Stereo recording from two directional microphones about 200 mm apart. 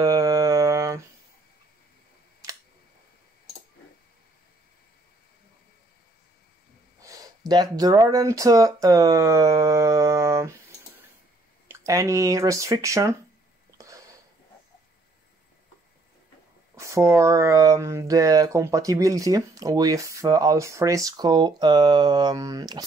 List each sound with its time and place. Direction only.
0.0 s mantra: 20° right (ahead or behind)
7.0 s speech: 15° right (ahead or behind)
11.6 s speech: 15° right (ahead or behind)
13.7 s a sound: 15° right (ahead or behind)
16.7 s speech: 15° right (ahead or behind)